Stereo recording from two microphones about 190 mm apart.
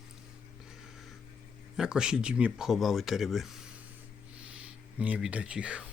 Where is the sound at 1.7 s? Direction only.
5° right (ahead or behind).